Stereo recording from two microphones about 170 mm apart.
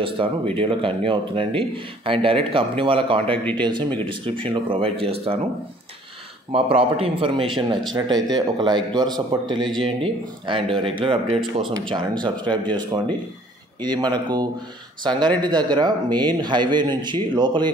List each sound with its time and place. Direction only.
0.0 s a man's voice: 30° right (ahead or behind)
6.5 s a man's voice: 35° right (ahead or behind)
13.7 s a man's voice: 25° right (ahead or behind)